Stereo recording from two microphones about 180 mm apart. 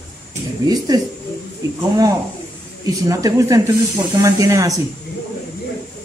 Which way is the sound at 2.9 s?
20° right (ahead or behind).